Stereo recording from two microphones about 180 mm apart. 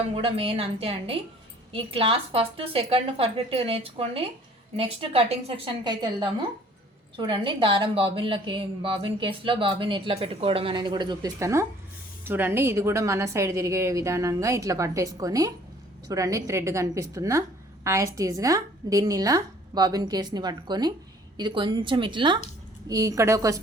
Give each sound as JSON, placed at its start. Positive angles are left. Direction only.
{"t": 0.1, "sound": "a woman's voice", "side_deg": -30}